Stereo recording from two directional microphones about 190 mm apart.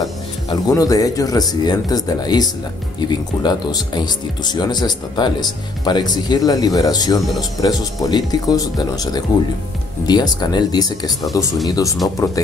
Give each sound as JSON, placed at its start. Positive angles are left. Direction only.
{"t": 0.0, "sound": "speech", "side_deg": 20}